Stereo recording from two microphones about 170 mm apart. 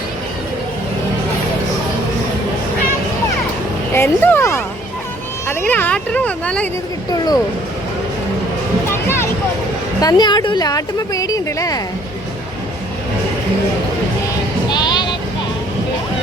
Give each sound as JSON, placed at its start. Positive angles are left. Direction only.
{"t": 3.9, "sound": "a sound", "side_deg": 10}
{"t": 7.1, "sound": "speech", "side_deg": 25}
{"t": 8.9, "sound": "music", "side_deg": 15}
{"t": 10.0, "sound": "speech", "side_deg": 25}
{"t": 14.7, "sound": "vehicle", "side_deg": 25}